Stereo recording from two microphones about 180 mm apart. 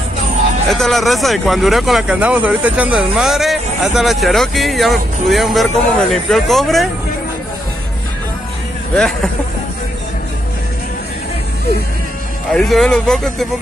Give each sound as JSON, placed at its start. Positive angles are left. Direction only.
{"t": 0.7, "sound": "speech", "side_deg": 0}
{"t": 8.9, "sound": "speech", "side_deg": 5}
{"t": 12.4, "sound": "speech", "side_deg": 0}